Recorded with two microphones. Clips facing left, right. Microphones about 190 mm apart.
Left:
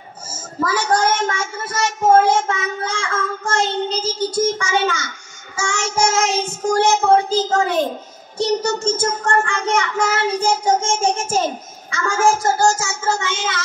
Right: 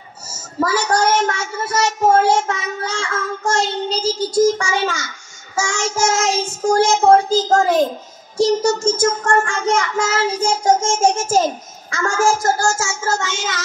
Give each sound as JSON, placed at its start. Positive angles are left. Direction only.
{"t": 0.3, "sound": "speech", "side_deg": 50}
{"t": 4.6, "sound": "child singing", "side_deg": 60}